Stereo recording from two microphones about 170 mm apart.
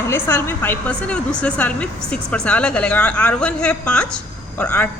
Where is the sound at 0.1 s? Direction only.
15° left (ahead or behind).